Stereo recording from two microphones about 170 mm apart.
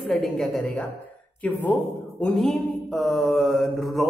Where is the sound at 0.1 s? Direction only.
Centre (ahead or behind).